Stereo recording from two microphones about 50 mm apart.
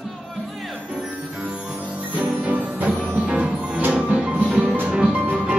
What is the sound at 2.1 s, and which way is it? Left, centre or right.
Music, right.